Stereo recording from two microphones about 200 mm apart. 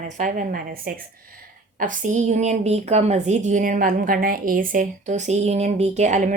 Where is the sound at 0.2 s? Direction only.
40° right (ahead or behind).